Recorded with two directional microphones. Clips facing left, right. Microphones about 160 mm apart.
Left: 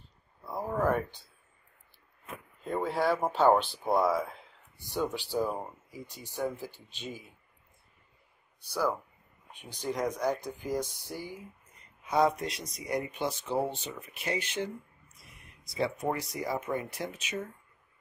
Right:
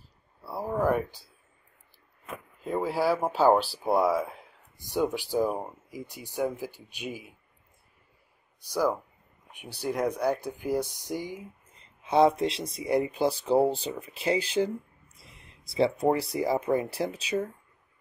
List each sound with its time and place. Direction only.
0.4 s a sound: 10° right (ahead or behind)
2.6 s speech: 5° right (ahead or behind)
8.5 s speech: 10° right (ahead or behind); by 17.4 s 35° right (ahead or behind)